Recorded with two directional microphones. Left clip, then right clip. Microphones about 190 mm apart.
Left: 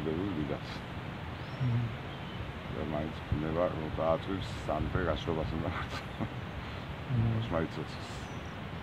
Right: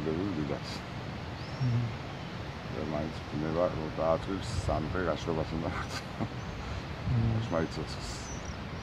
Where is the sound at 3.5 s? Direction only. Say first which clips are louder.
Right 2 dB; 5° right (ahead or behind).